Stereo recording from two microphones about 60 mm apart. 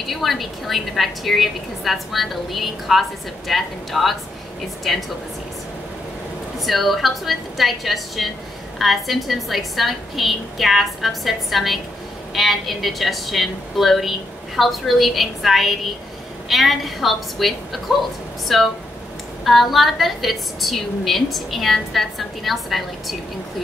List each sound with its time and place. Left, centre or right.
0.1 s a woman's voice: centre
6.6 s a woman's voice: centre